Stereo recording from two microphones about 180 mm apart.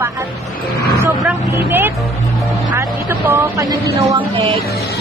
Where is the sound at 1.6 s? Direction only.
10° right (ahead or behind).